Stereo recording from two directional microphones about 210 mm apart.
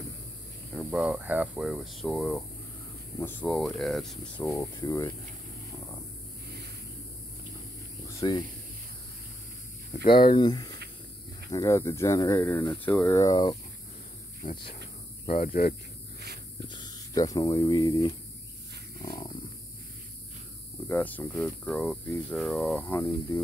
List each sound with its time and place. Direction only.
0.7 s speech: 5° right (ahead or behind)
4.7 s speech: 20° left (ahead or behind)
8.2 s speech: 15° left (ahead or behind)
10.0 s speech: 25° left (ahead or behind)
14.4 s speech: 35° left (ahead or behind)
16.6 s speech: 20° left (ahead or behind)
20.9 s speech: 10° left (ahead or behind)